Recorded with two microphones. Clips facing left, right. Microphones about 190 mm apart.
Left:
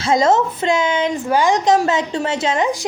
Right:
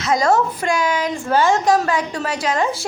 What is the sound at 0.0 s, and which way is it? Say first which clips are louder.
A woman's voice: left 2 dB; 25° left (ahead or behind).